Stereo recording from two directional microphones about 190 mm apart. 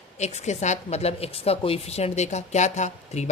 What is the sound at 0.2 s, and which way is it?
A woman's voice, 35° left (ahead or behind).